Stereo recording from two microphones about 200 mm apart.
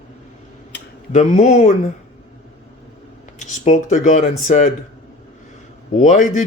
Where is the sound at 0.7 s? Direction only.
60° left (ahead or behind).